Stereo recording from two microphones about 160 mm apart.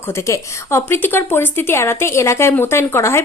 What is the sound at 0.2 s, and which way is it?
A woman's voice, 15° left (ahead or behind).